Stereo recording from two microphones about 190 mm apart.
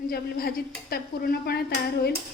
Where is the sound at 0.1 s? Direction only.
55° left (ahead or behind).